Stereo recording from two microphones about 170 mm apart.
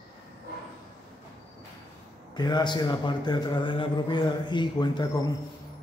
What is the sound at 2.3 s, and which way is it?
A man's voice, 25° left (ahead or behind).